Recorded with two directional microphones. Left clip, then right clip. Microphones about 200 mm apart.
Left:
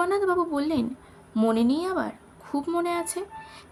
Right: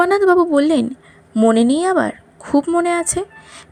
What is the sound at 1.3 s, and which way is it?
Speech, 20° right (ahead or behind).